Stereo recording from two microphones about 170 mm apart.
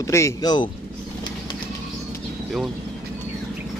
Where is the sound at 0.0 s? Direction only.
15° left (ahead or behind).